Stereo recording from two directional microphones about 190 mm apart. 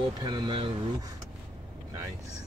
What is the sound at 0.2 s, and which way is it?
Speech, 25° right (ahead or behind).